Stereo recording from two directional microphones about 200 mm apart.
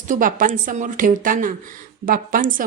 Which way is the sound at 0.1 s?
40° right (ahead or behind).